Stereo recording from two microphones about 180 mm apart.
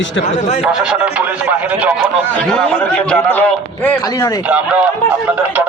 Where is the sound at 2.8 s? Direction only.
10° left (ahead or behind).